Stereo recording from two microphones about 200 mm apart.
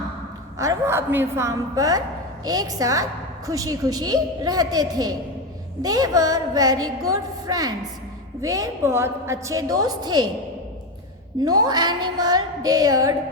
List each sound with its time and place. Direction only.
0.6 s a woman's voice: 15° right (ahead or behind)
11.4 s a woman's voice: 20° right (ahead or behind)